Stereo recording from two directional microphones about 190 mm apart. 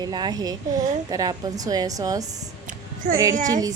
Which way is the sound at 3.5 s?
20° right (ahead or behind).